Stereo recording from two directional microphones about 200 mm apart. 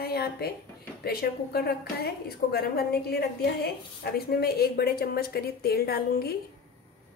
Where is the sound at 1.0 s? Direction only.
55° left (ahead or behind).